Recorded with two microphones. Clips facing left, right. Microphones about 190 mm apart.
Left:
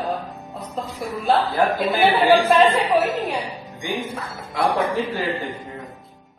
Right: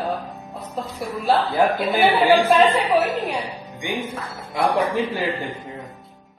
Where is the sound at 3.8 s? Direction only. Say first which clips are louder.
Even; 20° right (ahead or behind).